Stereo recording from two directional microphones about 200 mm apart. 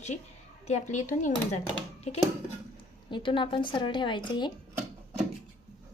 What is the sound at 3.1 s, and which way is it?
A woman's voice, 25° left (ahead or behind).